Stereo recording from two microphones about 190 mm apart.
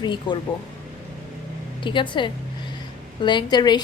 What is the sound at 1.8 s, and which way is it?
A woman's voice, 25° left (ahead or behind).